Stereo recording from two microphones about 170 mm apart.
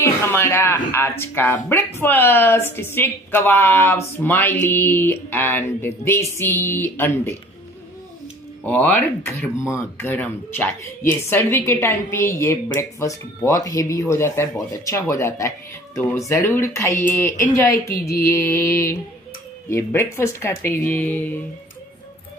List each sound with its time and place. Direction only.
0.0 s a woman's voice: 15° left (ahead or behind)
8.6 s a woman's voice: 10° left (ahead or behind)